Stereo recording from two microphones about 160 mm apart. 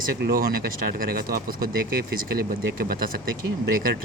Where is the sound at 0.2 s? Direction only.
65° right (ahead or behind).